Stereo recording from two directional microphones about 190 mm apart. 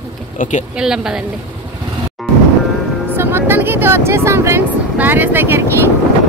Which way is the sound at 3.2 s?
10° right (ahead or behind).